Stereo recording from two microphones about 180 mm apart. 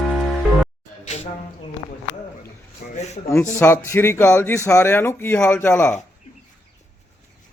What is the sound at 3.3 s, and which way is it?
Speech, 15° left (ahead or behind).